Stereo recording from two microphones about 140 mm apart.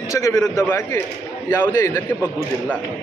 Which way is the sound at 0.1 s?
25° left (ahead or behind).